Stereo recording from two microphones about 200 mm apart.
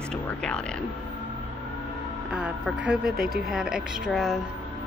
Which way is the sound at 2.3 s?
5° right (ahead or behind).